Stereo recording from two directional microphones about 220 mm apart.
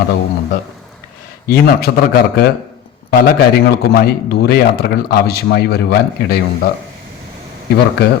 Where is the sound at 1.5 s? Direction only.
45° left (ahead or behind).